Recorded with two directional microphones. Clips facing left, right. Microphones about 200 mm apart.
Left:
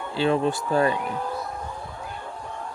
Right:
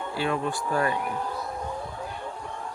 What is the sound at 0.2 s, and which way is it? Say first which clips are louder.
Speech: left 6 dB; 25° left (ahead or behind).